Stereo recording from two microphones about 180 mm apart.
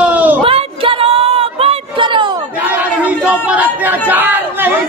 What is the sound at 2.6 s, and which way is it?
Chatter, 10° right (ahead or behind).